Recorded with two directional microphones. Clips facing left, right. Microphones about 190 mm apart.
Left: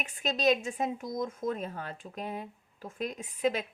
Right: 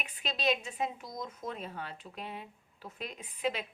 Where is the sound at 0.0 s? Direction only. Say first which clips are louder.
Left 5 dB; 45° left (ahead or behind).